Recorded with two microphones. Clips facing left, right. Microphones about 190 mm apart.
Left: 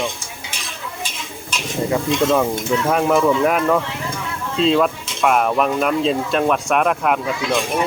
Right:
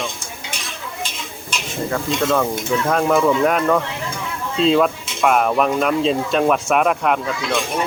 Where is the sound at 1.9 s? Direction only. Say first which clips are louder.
Left 2 dB; 10° left (ahead or behind).